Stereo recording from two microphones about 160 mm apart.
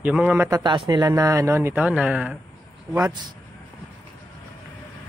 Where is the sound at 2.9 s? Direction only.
25° right (ahead or behind).